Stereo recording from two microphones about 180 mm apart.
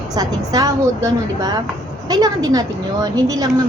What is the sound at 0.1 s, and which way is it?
A woman's voice, 20° right (ahead or behind).